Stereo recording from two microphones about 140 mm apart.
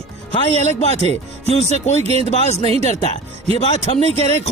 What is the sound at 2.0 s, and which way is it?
Speech, 45° right (ahead or behind).